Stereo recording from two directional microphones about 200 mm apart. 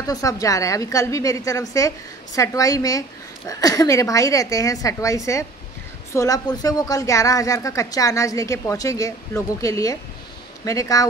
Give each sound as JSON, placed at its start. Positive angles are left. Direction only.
{"t": 0.0, "sound": "a woman's voice", "side_deg": 15}